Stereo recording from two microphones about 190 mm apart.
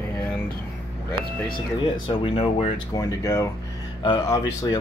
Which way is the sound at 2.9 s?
15° left (ahead or behind).